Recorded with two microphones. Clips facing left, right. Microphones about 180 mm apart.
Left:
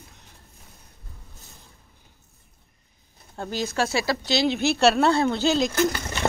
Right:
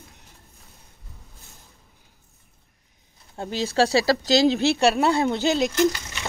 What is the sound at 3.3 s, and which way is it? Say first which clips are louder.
Speech: right 3 dB; 25° right (ahead or behind).